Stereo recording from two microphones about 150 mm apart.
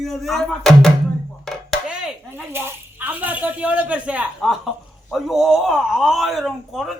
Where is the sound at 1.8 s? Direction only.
5° right (ahead or behind).